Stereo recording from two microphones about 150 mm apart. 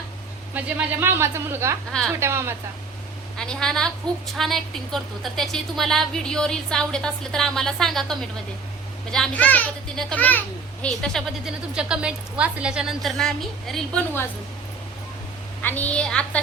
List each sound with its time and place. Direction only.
0.5 s speech: 15° right (ahead or behind)
1.9 s a woman's voice: centre (ahead or behind)
2.1 s speech: 15° right (ahead or behind)
3.3 s a woman's voice: 5° left (ahead or behind)
15.6 s a child's voice: 10° left (ahead or behind)